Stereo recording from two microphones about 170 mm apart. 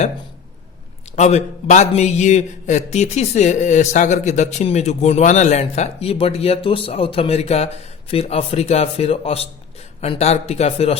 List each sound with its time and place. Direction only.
1.1 s a man's voice: 40° left (ahead or behind)